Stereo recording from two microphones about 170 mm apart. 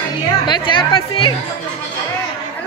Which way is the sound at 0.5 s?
30° left (ahead or behind).